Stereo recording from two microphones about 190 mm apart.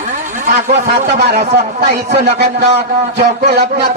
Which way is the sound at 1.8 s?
60° right (ahead or behind).